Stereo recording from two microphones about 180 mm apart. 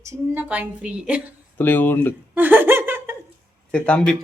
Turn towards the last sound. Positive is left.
turn(degrees=5)  # may be behind; listen again after turning